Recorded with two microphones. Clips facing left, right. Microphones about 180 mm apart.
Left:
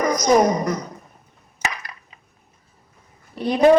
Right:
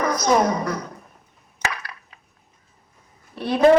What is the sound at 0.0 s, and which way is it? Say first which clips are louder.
Speech: left 3 dB; 15° left (ahead or behind).